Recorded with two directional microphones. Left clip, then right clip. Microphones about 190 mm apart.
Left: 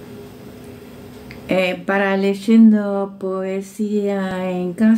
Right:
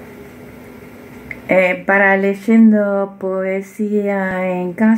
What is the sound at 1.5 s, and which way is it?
A woman's voice, 10° left (ahead or behind).